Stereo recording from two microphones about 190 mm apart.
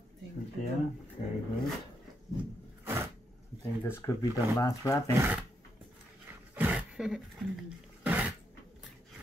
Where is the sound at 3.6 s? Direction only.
10° left (ahead or behind).